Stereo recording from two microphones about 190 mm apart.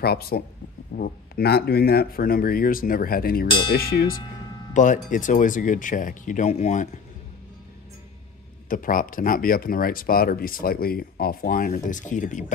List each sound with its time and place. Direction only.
0.0 s speech: 55° left (ahead or behind)
4.7 s speech: 40° left (ahead or behind)
8.6 s speech: 45° left (ahead or behind)